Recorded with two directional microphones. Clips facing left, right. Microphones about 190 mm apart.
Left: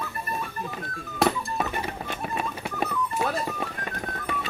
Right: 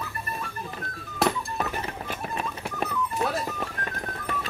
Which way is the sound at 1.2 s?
Centre (ahead or behind).